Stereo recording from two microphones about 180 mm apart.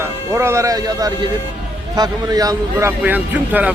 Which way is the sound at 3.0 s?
10° right (ahead or behind).